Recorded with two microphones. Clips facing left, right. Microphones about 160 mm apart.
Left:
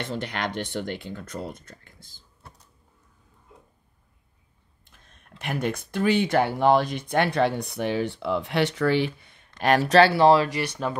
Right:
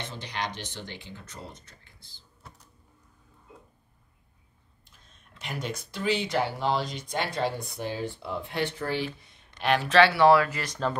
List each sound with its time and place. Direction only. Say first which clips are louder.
0.1 s speech: left 6 dB; 55° left (ahead or behind)
5.0 s speech: left 7 dB; 60° left (ahead or behind); by 10.5 s 25° left (ahead or behind)
10.8 s speech: right 2 dB; 10° left (ahead or behind)